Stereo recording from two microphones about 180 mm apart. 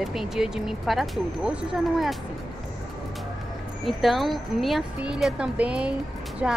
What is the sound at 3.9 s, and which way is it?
Speech, centre (ahead or behind).